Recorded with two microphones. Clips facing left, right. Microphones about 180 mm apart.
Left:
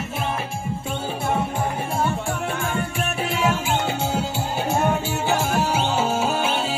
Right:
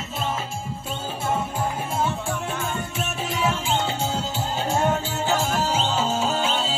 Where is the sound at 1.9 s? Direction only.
10° left (ahead or behind).